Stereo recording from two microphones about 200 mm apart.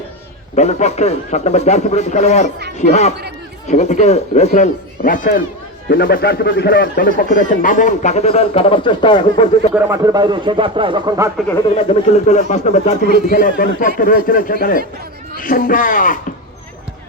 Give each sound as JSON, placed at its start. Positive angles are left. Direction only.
{"t": 0.5, "sound": "a man's voice", "side_deg": 35}
{"t": 9.7, "sound": "a man's voice", "side_deg": -15}
{"t": 11.7, "sound": "a man's voice", "side_deg": 35}
{"t": 13.0, "sound": "speech", "side_deg": -55}
{"t": 13.3, "sound": "speech", "side_deg": 45}